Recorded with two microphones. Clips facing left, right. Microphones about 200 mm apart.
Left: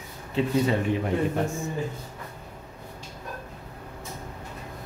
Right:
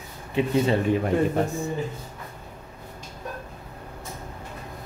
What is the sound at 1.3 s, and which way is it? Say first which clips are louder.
Speech: right 3 dB; 35° right (ahead or behind).